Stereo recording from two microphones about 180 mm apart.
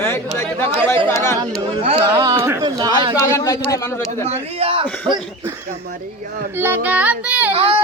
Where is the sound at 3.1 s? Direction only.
15° left (ahead or behind).